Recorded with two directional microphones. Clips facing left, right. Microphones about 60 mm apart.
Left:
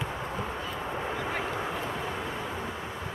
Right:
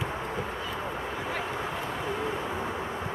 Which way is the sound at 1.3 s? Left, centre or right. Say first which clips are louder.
Even; centre.